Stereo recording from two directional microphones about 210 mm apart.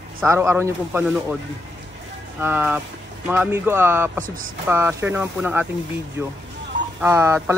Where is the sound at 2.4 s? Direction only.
10° right (ahead or behind).